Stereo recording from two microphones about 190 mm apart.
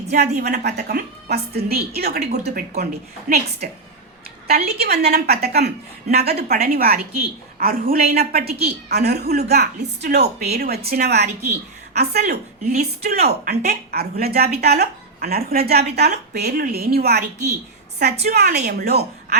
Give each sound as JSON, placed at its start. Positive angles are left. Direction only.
{"t": 0.1, "sound": "a woman's voice", "side_deg": -55}
{"t": 3.2, "sound": "a woman's voice", "side_deg": -45}
{"t": 4.4, "sound": "a woman's voice", "side_deg": -55}
{"t": 18.3, "sound": "a woman's voice", "side_deg": -50}